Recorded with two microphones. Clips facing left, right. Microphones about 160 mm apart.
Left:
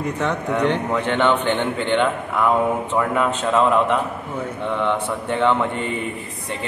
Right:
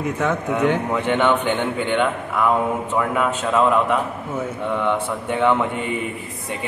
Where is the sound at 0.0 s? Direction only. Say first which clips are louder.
Right 1 dB; 5° right (ahead or behind).